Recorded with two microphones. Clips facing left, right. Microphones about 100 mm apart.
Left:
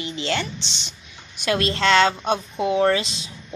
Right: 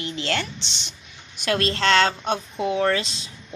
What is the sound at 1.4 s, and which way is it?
Speech, 10° left (ahead or behind).